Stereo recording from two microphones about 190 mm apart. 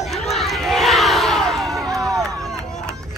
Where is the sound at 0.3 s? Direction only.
Centre (ahead or behind).